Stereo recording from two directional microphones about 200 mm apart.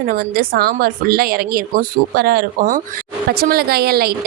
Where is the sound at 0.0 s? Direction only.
45° right (ahead or behind).